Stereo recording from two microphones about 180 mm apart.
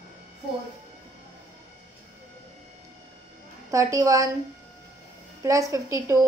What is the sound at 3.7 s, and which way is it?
Speech, 20° right (ahead or behind).